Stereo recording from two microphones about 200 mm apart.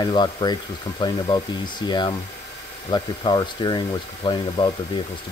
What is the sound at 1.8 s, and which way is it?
Speech, 20° left (ahead or behind).